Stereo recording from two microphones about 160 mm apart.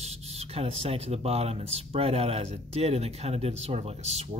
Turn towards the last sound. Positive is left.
turn(degrees=-40)  # may be behind; listen again after turning